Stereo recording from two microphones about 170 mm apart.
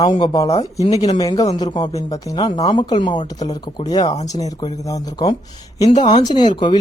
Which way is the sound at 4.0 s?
40° left (ahead or behind).